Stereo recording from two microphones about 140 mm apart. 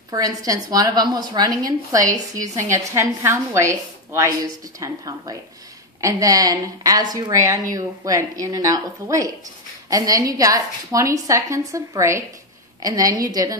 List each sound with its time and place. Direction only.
0.1 s a woman's voice: 25° right (ahead or behind)